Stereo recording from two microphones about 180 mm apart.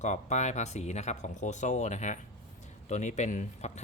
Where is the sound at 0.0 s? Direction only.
40° left (ahead or behind).